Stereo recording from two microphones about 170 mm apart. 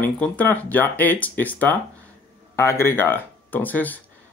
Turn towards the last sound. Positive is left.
turn(degrees=10)  # may be behind; listen again after turning